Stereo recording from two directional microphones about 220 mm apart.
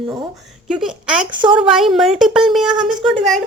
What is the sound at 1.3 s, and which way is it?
Speech, 20° right (ahead or behind).